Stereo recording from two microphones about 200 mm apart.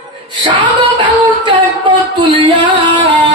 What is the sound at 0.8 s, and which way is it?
Music, 25° right (ahead or behind).